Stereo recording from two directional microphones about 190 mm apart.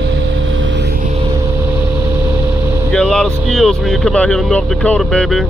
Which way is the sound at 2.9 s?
5° left (ahead or behind).